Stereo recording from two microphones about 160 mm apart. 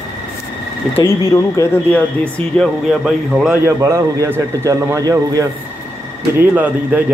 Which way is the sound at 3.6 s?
20° right (ahead or behind).